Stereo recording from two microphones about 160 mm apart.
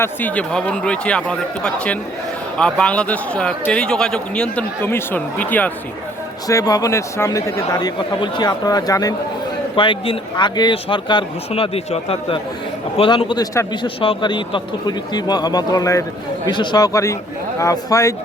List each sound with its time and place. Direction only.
0.0 s speech: 10° left (ahead or behind)
6.5 s a man's voice: 20° left (ahead or behind)
13.8 s speech: 35° left (ahead or behind)